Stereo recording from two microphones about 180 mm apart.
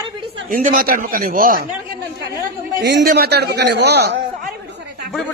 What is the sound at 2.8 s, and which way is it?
A man's voice, 70° right (ahead or behind).